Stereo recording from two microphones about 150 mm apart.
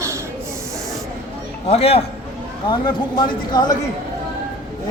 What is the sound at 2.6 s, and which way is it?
Speech, 30° left (ahead or behind).